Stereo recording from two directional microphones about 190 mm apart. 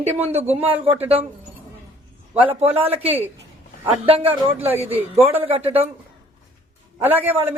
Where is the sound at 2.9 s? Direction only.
30° right (ahead or behind).